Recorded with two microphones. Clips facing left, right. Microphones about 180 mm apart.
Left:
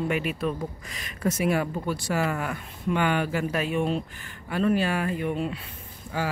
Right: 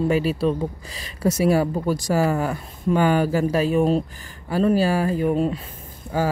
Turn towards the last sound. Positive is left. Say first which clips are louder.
# right 7 dB
turn(degrees=-40)  # may be behind; listen again after turning